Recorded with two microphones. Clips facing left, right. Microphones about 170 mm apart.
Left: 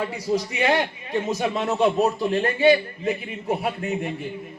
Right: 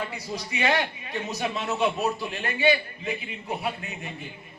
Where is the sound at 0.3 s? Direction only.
45° left (ahead or behind).